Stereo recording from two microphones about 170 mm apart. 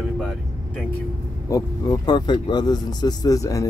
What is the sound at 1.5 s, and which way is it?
Speech, 20° left (ahead or behind).